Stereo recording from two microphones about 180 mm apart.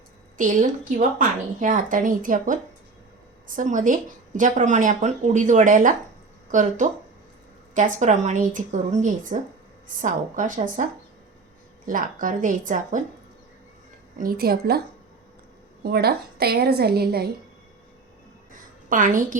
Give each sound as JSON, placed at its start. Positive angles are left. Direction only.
{"t": 0.3, "sound": "a woman's voice", "side_deg": -45}
{"t": 11.9, "sound": "a woman's voice", "side_deg": -50}
{"t": 14.2, "sound": "a woman's voice", "side_deg": -55}
{"t": 15.8, "sound": "a woman's voice", "side_deg": -60}
{"t": 18.5, "sound": "a sound", "side_deg": -45}